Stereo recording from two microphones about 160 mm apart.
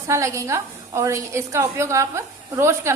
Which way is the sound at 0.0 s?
20° right (ahead or behind).